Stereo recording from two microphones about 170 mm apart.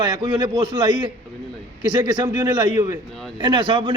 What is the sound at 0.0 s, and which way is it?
A man's voice, 25° right (ahead or behind).